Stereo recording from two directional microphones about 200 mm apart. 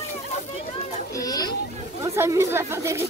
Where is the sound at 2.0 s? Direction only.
15° right (ahead or behind).